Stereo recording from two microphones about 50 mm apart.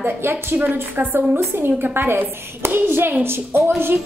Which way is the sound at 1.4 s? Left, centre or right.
Right.